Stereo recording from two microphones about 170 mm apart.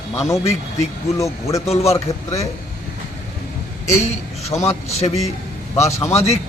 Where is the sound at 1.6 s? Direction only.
40° left (ahead or behind).